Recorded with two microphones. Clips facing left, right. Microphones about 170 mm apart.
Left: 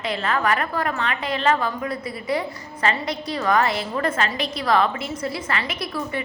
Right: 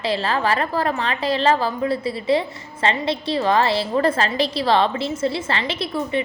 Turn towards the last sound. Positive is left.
turn(degrees=-25)  # may be behind; listen again after turning